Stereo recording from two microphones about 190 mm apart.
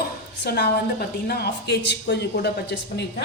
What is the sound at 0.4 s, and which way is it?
A woman's voice, 55° left (ahead or behind).